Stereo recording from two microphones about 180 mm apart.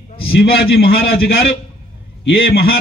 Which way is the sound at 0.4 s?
60° left (ahead or behind).